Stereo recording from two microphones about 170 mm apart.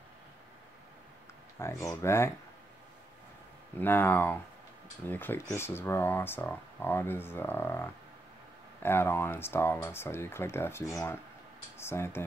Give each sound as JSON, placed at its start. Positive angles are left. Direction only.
{"t": 1.6, "sound": "speech", "side_deg": 20}
{"t": 3.8, "sound": "speech", "side_deg": 10}